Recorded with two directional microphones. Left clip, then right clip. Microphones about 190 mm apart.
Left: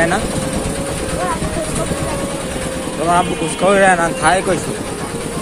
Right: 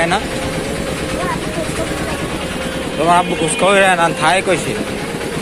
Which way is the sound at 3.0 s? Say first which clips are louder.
Right 2 dB; 5° right (ahead or behind).